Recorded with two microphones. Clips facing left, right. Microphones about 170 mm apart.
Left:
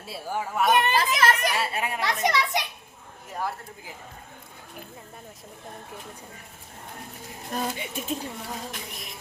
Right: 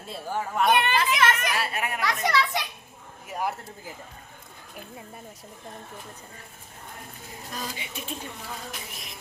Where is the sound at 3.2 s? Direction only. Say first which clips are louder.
Right 2 dB; 10° right (ahead or behind).